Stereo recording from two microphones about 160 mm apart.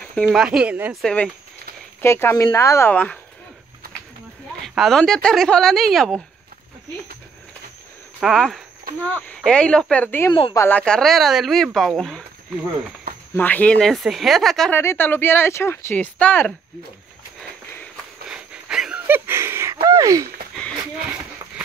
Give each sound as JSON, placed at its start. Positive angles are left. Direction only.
{"t": 0.2, "sound": "speech", "side_deg": -5}
{"t": 1.0, "sound": "speech", "side_deg": 5}
{"t": 4.6, "sound": "speech", "side_deg": 0}
{"t": 8.2, "sound": "speech", "side_deg": 0}
{"t": 13.3, "sound": "speech", "side_deg": 10}
{"t": 14.7, "sound": "speech", "side_deg": 15}
{"t": 18.3, "sound": "a sound", "side_deg": -5}